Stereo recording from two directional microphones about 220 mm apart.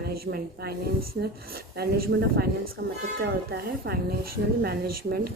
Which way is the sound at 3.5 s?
45° right (ahead or behind).